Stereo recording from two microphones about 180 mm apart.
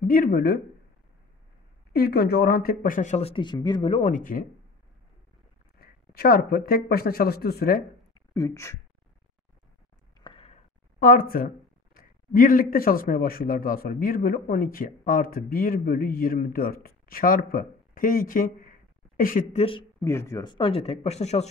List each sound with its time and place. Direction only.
0.0 s speech: 50° left (ahead or behind)
1.9 s speech: 60° left (ahead or behind)
5.8 s speech: 55° left (ahead or behind)
8.1 s a sound: 20° left (ahead or behind)
10.2 s a sound: 30° left (ahead or behind)
11.0 s speech: 50° left (ahead or behind)
19.5 s speech: 30° left (ahead or behind)
20.0 s speech: 15° left (ahead or behind); by 21.5 s 40° left (ahead or behind)